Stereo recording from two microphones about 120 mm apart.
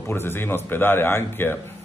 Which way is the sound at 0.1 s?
20° left (ahead or behind).